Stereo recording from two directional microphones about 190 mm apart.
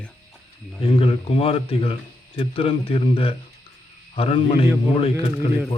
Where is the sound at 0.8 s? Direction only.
30° left (ahead or behind).